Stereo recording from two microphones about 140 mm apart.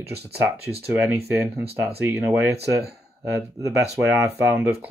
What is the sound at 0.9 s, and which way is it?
Speech, 10° right (ahead or behind).